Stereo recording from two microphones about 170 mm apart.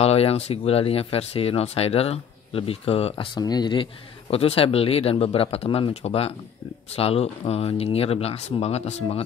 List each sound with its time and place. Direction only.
0.0 s speech: 35° left (ahead or behind)